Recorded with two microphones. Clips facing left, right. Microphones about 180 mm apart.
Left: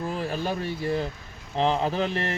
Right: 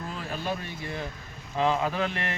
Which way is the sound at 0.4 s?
35° left (ahead or behind).